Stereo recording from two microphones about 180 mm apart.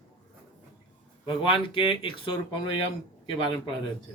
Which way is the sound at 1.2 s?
30° left (ahead or behind).